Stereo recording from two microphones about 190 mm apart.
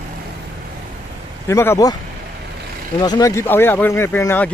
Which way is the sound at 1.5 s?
15° left (ahead or behind).